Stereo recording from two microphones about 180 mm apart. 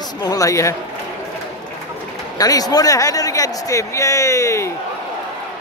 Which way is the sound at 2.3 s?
20° left (ahead or behind).